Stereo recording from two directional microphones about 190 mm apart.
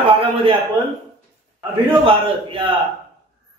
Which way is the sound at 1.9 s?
30° right (ahead or behind).